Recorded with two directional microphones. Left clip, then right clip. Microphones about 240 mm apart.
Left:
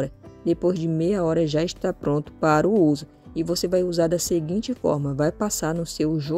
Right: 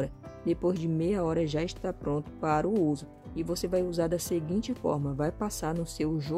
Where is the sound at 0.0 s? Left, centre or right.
Centre.